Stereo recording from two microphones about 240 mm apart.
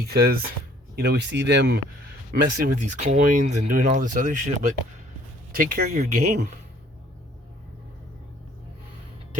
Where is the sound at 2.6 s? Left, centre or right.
Right.